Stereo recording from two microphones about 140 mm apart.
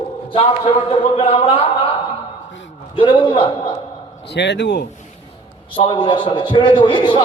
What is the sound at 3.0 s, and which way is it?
Speech, 35° left (ahead or behind).